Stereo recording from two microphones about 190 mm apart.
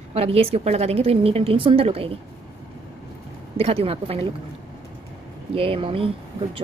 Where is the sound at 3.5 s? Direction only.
30° right (ahead or behind).